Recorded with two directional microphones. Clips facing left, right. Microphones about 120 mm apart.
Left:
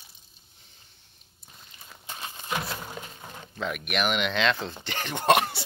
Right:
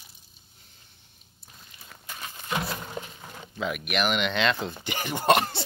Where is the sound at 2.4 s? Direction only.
5° left (ahead or behind).